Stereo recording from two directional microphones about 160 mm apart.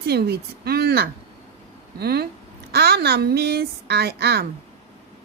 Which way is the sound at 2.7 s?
90° right.